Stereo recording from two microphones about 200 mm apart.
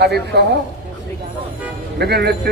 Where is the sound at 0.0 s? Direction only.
55° right (ahead or behind).